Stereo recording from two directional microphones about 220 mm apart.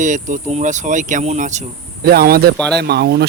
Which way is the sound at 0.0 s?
35° right (ahead or behind).